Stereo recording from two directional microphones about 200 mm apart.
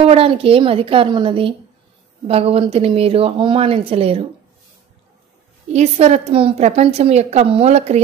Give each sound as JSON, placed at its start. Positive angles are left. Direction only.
{"t": 0.0, "sound": "speech", "side_deg": -30}
{"t": 5.7, "sound": "a woman's voice", "side_deg": -35}